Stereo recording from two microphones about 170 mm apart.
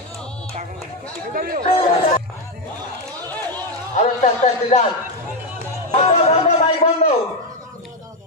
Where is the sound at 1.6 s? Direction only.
35° left (ahead or behind).